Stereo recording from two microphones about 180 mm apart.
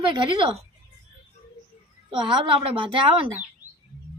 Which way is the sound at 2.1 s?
25° right (ahead or behind).